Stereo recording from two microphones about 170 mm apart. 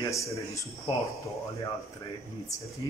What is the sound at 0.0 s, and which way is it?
Speech, 20° left (ahead or behind).